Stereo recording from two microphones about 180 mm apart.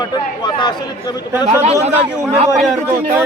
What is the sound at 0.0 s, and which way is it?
Speech, 25° left (ahead or behind).